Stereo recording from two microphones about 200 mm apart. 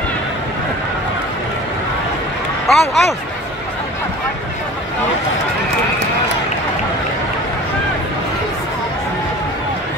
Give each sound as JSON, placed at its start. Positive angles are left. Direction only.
{"t": 2.7, "sound": "speech", "side_deg": 0}